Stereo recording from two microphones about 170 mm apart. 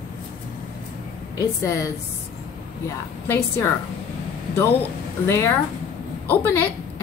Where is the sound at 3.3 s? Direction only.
15° left (ahead or behind).